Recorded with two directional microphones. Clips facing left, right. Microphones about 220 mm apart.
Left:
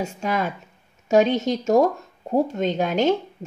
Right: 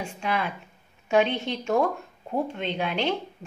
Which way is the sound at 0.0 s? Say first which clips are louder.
Left 4 dB; 40° left (ahead or behind).